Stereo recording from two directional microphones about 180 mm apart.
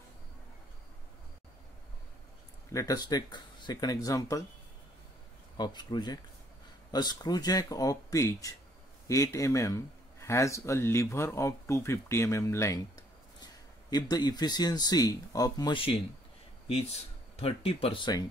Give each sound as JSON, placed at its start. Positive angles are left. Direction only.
{"t": 2.7, "sound": "speech", "side_deg": 20}
{"t": 5.6, "sound": "speech", "side_deg": 25}